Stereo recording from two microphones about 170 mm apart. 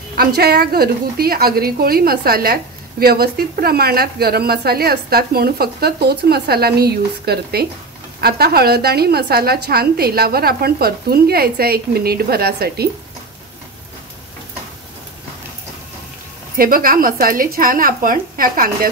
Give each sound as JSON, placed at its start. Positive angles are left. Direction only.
{"t": 0.2, "sound": "a woman's voice", "side_deg": -65}
{"t": 16.5, "sound": "a woman's voice", "side_deg": -55}